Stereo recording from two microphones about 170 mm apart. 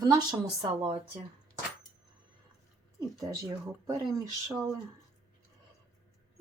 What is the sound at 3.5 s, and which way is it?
Speech, 20° right (ahead or behind).